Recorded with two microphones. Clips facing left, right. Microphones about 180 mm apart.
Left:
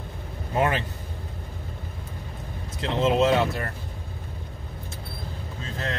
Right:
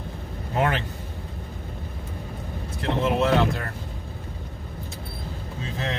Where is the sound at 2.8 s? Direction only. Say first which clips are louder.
Left 1 dB; 20° left (ahead or behind).